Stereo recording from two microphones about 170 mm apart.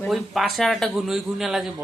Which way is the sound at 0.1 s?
Centre (ahead or behind).